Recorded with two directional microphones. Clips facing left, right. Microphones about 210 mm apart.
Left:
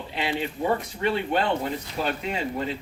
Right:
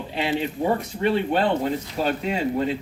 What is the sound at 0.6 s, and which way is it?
Speech, 30° right (ahead or behind).